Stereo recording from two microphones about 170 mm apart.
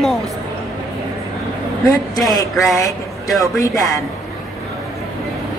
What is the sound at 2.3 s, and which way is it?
Speech, 20° left (ahead or behind).